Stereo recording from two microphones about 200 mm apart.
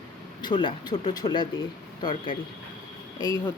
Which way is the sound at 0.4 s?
25° left (ahead or behind).